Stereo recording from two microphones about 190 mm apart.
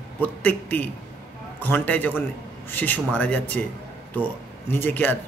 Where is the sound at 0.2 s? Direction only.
10° left (ahead or behind).